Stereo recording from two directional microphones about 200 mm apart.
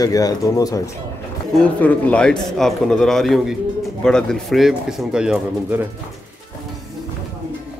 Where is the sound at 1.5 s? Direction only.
5° left (ahead or behind).